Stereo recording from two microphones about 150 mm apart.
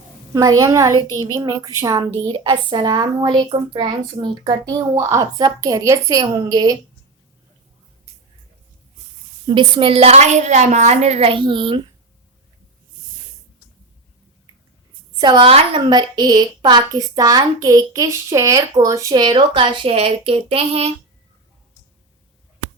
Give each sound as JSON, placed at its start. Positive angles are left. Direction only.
{"t": 0.3, "sound": "a woman's voice", "side_deg": -25}
{"t": 9.5, "sound": "a woman's voice", "side_deg": -35}
{"t": 15.1, "sound": "a woman's voice", "side_deg": -30}